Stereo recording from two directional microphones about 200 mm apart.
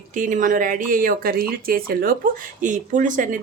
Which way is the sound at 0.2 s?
40° right (ahead or behind).